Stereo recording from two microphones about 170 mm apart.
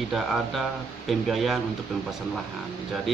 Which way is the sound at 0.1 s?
Centre (ahead or behind).